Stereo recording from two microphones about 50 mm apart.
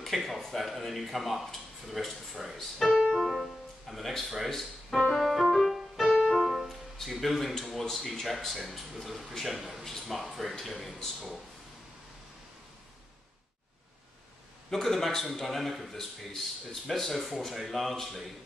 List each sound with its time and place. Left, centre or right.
0.0 s speech: centre
3.1 s music: centre
3.9 s speech: centre
5.1 s music: centre
6.1 s music: centre
6.4 s speech: centre
14.7 s speech: centre